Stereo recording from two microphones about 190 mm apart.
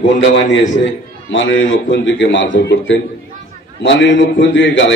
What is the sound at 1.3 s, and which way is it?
A man's voice, 75° left (ahead or behind).